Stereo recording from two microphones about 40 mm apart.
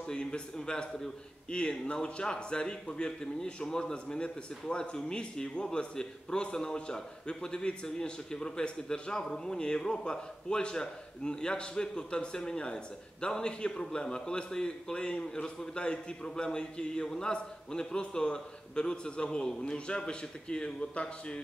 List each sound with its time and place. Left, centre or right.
0.0 s a man's voice: left